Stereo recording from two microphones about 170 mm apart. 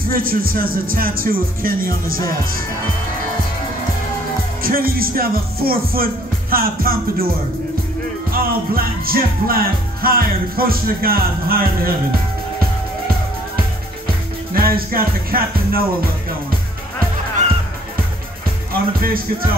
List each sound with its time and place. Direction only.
0.1 s speech: 60° right (ahead or behind)
4.6 s speech: 60° right (ahead or behind)
8.3 s speech: 60° right (ahead or behind)
14.0 s music: 60° right (ahead or behind)
18.7 s speech: 60° right (ahead or behind)